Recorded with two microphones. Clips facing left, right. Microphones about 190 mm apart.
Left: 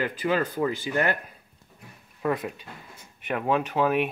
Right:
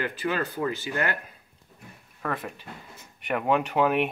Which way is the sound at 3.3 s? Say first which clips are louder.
Right 1 dB; centre (ahead or behind).